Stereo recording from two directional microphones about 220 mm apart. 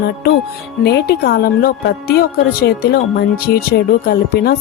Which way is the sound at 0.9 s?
50° left (ahead or behind).